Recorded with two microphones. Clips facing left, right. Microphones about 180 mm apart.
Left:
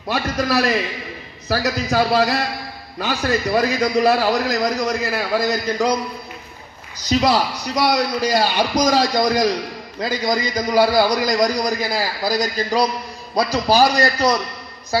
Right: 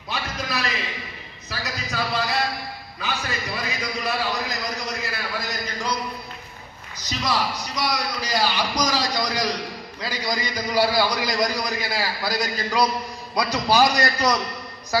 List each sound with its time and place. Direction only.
0.1 s a man's voice: 65° left (ahead or behind)
1.5 s a man's voice: 80° left
7.2 s a man's voice: 65° left (ahead or behind); by 14.4 s 30° left (ahead or behind)